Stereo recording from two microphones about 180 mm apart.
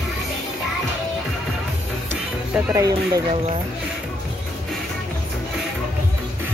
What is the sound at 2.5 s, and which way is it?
Speech, 15° right (ahead or behind).